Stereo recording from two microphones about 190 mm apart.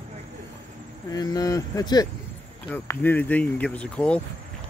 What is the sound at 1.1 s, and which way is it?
Speech, 20° left (ahead or behind).